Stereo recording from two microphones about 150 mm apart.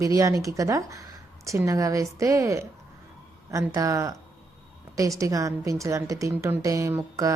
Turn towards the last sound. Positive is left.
turn(degrees=-20)  # may be behind; listen again after turning